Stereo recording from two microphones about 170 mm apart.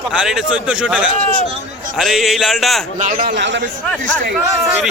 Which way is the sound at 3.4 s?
90° right.